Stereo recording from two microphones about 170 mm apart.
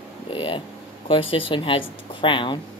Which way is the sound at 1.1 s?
30° left (ahead or behind).